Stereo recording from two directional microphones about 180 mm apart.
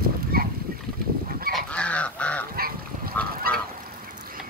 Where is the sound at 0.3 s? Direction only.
55° right (ahead or behind).